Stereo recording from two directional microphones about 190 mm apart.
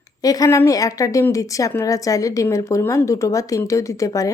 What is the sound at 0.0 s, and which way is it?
Speech, 20° left (ahead or behind).